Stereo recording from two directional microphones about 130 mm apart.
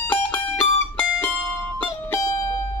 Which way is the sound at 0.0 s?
15° left (ahead or behind).